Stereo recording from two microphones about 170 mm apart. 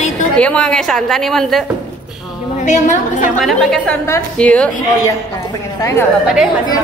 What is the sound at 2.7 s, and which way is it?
Speech, 45° left (ahead or behind).